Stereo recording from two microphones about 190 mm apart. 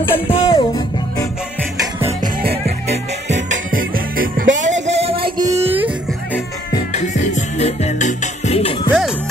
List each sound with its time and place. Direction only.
0.3 s music: 25° left (ahead or behind)
2.2 s music: 55° right (ahead or behind)
3.3 s music: 70° right (ahead or behind)
3.7 s music: 50° right (ahead or behind)
4.6 s a sound: 35° right (ahead or behind)
5.5 s music: 10° right (ahead or behind)
6.9 s music: 40° left (ahead or behind)